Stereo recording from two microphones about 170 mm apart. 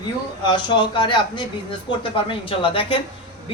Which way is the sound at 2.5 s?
30° left (ahead or behind).